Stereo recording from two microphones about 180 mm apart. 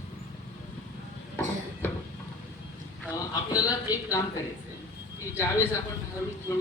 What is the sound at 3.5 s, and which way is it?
Speech, 20° left (ahead or behind).